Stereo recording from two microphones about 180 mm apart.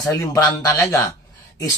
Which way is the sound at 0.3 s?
20° left (ahead or behind).